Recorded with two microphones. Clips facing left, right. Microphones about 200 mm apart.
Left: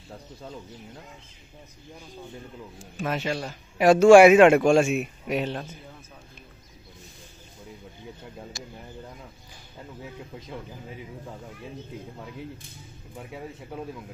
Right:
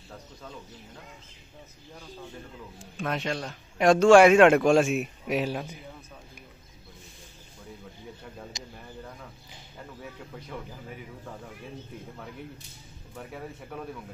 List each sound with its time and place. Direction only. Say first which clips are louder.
3.0 s a man's voice: left 2 dB; 5° left (ahead or behind)
8.5 s speech: left 3 dB; 20° right (ahead or behind)